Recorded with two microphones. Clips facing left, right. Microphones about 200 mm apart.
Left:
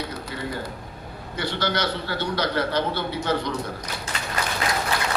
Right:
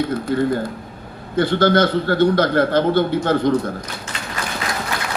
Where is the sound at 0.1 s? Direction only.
50° right (ahead or behind).